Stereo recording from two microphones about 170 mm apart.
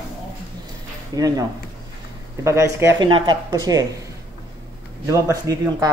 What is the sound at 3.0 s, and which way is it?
Speech, 30° right (ahead or behind).